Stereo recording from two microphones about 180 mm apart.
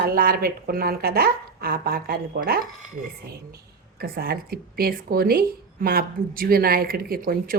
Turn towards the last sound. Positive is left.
turn(degrees=-55)  # may be behind; listen again after turning